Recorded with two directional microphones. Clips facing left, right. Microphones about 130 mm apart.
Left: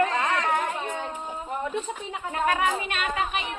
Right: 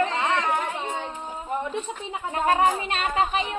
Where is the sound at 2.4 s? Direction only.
35° right (ahead or behind).